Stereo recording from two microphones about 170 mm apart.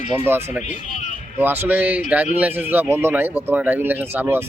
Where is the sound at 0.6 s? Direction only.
45° left (ahead or behind).